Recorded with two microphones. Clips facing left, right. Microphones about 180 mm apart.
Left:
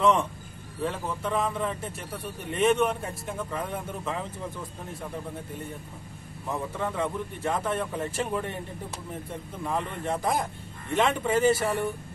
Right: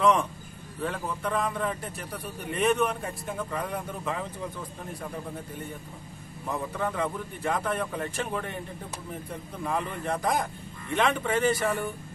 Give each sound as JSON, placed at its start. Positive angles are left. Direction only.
{"t": 0.0, "sound": "a man's voice", "side_deg": 0}
{"t": 6.4, "sound": "a man's voice", "side_deg": 0}
{"t": 9.6, "sound": "a man's voice", "side_deg": 0}